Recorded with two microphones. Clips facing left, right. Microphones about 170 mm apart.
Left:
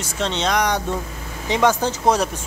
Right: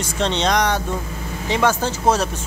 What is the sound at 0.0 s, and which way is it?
Speech, 5° left (ahead or behind).